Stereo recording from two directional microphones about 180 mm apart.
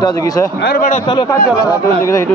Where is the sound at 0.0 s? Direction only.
20° left (ahead or behind).